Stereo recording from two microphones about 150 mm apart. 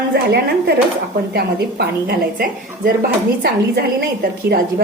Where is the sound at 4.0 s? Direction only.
90° right.